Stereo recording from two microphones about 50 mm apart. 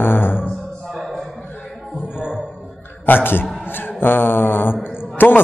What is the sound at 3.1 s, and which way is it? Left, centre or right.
Speech, left.